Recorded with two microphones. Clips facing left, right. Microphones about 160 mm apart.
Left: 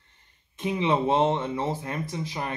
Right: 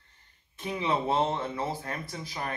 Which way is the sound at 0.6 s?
20° left (ahead or behind).